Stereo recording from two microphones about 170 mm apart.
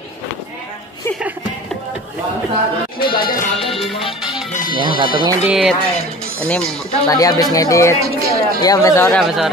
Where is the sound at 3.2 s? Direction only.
60° left (ahead or behind).